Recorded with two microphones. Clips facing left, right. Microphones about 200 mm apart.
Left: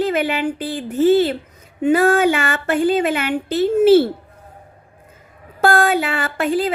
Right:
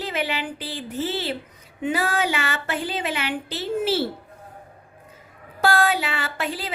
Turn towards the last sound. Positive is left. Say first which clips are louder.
# left 10 dB
turn(degrees=50)  # may be behind; listen again after turning